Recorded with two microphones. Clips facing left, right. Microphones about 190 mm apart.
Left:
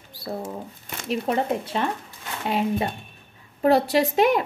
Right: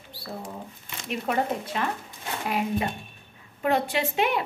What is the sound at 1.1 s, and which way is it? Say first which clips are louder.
A woman's voice: left 3 dB; 30° left (ahead or behind).